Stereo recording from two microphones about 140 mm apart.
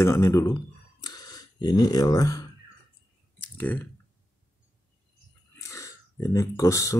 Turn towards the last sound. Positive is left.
turn(degrees=25)  # may be behind; listen again after turning